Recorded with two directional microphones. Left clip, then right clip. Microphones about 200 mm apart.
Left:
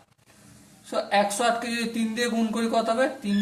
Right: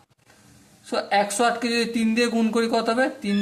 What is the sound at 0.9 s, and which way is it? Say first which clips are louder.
A man's voice: right 1 dB; 45° right (ahead or behind).